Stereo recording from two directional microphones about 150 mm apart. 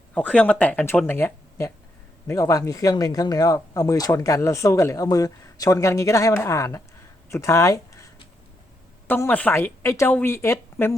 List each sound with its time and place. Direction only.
0.1 s a woman's voice: 10° left (ahead or behind)
9.0 s a woman's voice: 10° left (ahead or behind)